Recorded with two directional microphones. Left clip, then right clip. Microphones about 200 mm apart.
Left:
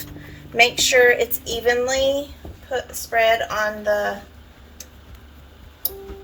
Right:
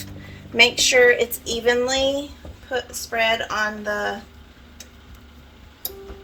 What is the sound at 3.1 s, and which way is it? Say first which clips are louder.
Speech: left 3 dB; 45° right (ahead or behind).